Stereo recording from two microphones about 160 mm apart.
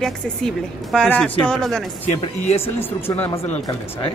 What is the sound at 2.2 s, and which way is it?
Speech, 40° left (ahead or behind).